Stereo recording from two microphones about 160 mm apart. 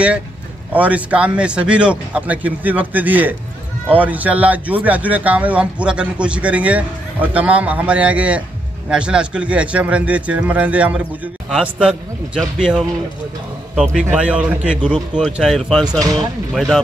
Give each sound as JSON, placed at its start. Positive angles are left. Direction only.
{"t": 0.7, "sound": "a man's voice", "side_deg": -10}
{"t": 14.0, "sound": "a man's voice", "side_deg": -10}
{"t": 15.9, "sound": "speech", "side_deg": -25}
{"t": 16.5, "sound": "a man's voice", "side_deg": 0}